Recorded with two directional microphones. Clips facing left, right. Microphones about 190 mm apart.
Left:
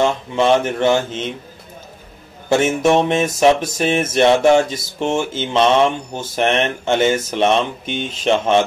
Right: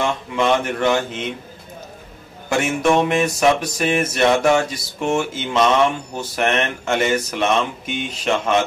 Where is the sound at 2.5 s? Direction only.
30° left (ahead or behind).